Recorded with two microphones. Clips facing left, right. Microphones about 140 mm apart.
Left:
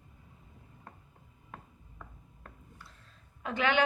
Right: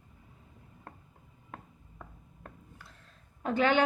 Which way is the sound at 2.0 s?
40° right (ahead or behind).